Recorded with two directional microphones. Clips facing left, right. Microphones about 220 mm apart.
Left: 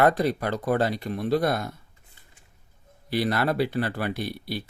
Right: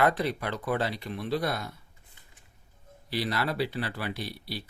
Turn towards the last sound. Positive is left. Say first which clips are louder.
# left 6 dB
turn(degrees=50)  # may be behind; listen again after turning